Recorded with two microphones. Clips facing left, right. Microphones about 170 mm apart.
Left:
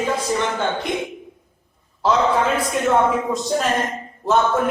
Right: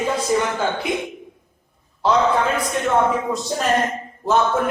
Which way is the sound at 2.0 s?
Centre (ahead or behind).